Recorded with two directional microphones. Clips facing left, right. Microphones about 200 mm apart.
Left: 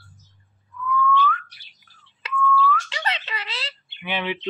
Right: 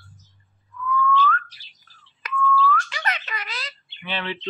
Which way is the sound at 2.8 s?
25° left (ahead or behind).